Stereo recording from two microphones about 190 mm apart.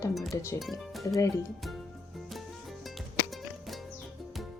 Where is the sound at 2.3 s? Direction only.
Centre (ahead or behind).